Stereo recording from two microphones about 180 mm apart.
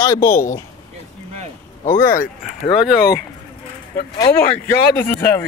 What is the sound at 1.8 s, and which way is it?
Speech, 50° left (ahead or behind).